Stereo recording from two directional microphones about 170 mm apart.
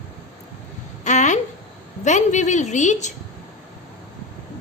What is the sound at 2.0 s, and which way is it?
A woman's voice, 45° left (ahead or behind).